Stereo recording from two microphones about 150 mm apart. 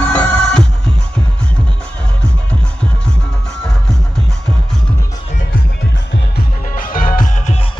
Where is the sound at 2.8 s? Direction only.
5° left (ahead or behind).